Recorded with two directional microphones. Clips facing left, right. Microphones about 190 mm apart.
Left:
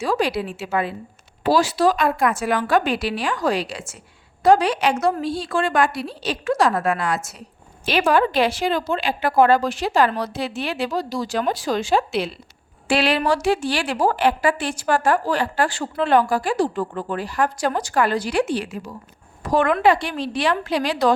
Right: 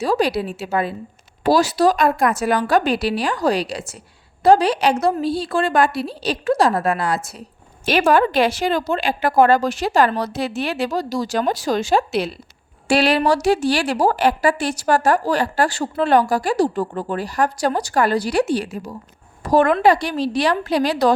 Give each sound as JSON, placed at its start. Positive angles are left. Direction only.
{"t": 0.0, "sound": "a woman's voice", "side_deg": -35}
{"t": 7.9, "sound": "a woman's voice", "side_deg": -45}
{"t": 19.4, "sound": "a sound", "side_deg": -35}
{"t": 19.8, "sound": "a woman's voice", "side_deg": -40}